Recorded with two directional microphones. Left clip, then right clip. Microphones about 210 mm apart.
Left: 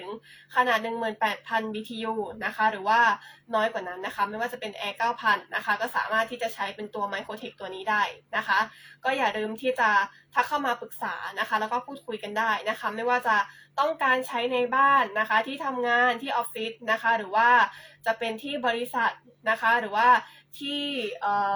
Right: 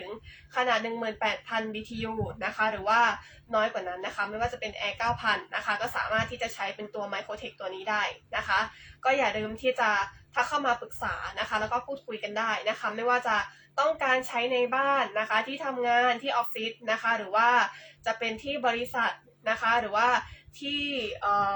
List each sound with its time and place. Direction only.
0.5 s speech: 20° left (ahead or behind)